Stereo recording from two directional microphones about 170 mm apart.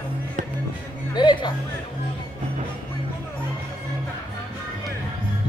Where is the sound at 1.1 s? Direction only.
25° left (ahead or behind).